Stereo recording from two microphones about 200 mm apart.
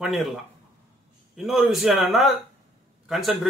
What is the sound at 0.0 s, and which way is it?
Speech, centre (ahead or behind).